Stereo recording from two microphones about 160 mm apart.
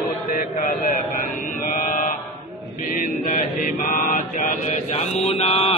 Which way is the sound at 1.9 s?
55° left (ahead or behind).